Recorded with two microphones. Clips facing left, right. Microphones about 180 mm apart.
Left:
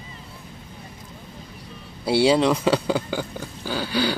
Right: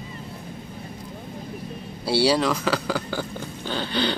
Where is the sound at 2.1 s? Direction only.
20° left (ahead or behind).